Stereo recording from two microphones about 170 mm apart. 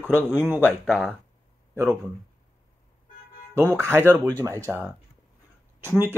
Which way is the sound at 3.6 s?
15° right (ahead or behind).